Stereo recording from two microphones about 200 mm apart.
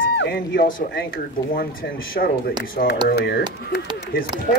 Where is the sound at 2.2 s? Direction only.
50° left (ahead or behind).